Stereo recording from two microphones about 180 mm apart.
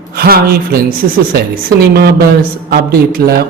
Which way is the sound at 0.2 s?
55° right (ahead or behind).